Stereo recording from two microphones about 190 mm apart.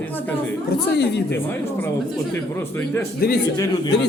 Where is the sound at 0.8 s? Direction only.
60° left (ahead or behind).